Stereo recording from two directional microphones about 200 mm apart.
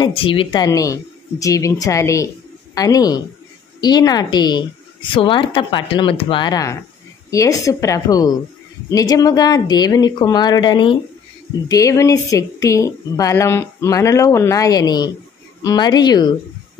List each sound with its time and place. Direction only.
0.0 s a woman's voice: 25° left (ahead or behind)